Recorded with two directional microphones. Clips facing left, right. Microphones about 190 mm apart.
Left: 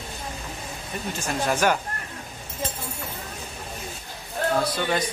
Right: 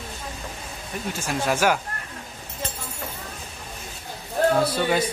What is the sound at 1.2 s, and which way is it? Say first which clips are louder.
Speech: right 1 dB; 10° right (ahead or behind).